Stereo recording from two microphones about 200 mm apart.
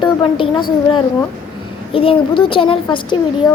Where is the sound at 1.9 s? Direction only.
25° left (ahead or behind).